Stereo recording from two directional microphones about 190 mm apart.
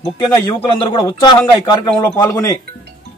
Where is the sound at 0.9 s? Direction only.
25° left (ahead or behind).